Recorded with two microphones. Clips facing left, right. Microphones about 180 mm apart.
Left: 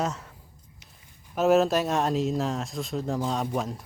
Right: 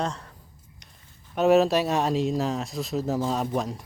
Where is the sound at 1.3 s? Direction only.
Centre (ahead or behind).